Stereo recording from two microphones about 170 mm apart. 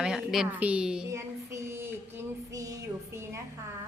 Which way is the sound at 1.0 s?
15° right (ahead or behind).